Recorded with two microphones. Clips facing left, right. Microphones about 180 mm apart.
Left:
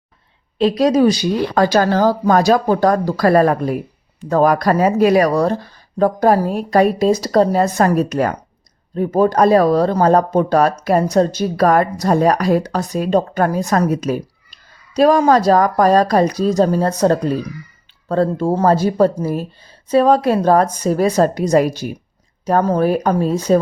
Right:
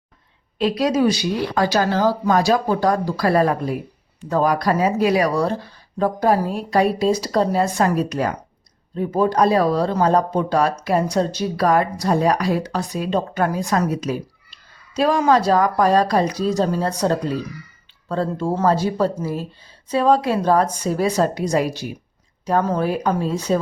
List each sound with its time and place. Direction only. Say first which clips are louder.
0.6 s speech: left 5 dB; 40° left (ahead or behind); by 14.2 s 55° left (ahead or behind)
14.9 s speech: left 5 dB; 40° left (ahead or behind)
18.1 s speech: left 6 dB; 45° left (ahead or behind)